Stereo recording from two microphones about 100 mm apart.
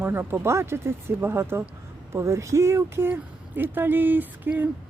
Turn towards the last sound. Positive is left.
turn(degrees=-20)  # may be behind; listen again after turning